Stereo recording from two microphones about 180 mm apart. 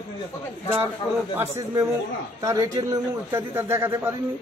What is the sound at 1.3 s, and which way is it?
A man's voice, 15° right (ahead or behind).